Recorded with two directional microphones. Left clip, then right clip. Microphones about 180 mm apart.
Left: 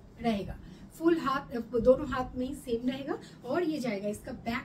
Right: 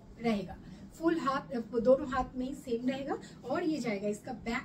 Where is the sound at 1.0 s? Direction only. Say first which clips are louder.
Left 3 dB; 20° left (ahead or behind).